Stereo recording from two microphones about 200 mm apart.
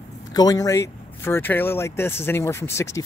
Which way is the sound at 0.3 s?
20° left (ahead or behind).